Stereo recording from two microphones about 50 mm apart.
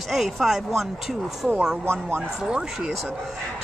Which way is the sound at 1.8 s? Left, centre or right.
Right.